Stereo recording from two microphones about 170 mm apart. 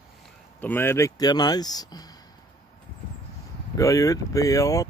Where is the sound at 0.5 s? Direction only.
10° left (ahead or behind).